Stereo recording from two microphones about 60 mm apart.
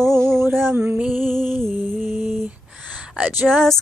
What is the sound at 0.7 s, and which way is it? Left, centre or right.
Female singing, right.